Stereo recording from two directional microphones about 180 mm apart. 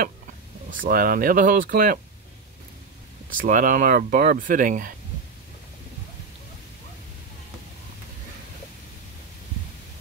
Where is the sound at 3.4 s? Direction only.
50° right (ahead or behind).